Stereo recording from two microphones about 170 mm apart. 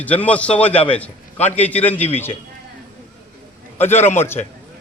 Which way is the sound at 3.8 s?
15° left (ahead or behind).